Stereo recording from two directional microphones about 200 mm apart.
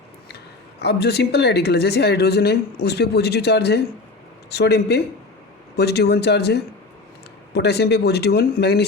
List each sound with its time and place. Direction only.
0.8 s speech: 55° left (ahead or behind)